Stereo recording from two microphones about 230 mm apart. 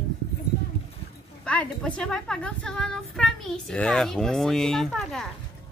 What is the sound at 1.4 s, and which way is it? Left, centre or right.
A woman's voice, centre.